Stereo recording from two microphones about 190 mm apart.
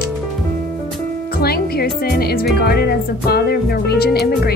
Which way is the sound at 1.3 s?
55° left (ahead or behind).